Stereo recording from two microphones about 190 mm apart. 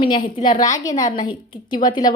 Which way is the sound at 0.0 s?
25° left (ahead or behind).